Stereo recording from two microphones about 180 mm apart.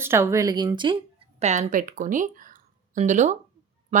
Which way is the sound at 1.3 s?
35° right (ahead or behind).